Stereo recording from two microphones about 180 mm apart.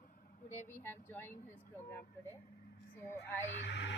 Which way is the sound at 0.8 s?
10° left (ahead or behind).